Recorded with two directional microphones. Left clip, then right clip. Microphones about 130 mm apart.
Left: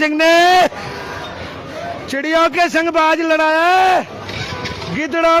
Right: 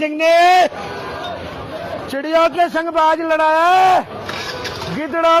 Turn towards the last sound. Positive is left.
turn(degrees=65)  # may be behind; listen again after turning